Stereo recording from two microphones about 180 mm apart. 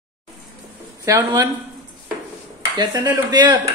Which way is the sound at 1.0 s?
20° right (ahead or behind).